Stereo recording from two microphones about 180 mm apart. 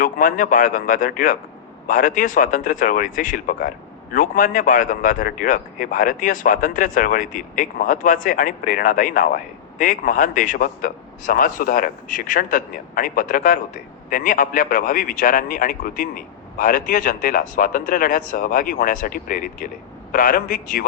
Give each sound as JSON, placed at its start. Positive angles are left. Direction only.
{"t": 0.0, "sound": "a man's voice", "side_deg": 50}